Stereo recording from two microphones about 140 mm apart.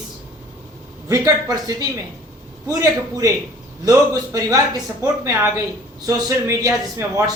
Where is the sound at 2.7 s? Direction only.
25° right (ahead or behind).